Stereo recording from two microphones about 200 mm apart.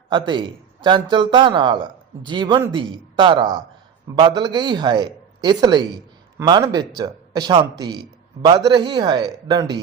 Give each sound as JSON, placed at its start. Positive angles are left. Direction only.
{"t": 0.1, "sound": "a man's voice", "side_deg": -25}